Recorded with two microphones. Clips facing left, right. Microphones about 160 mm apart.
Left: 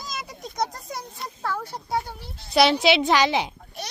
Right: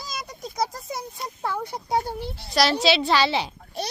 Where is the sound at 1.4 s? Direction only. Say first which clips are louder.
Right 1 dB; 15° right (ahead or behind).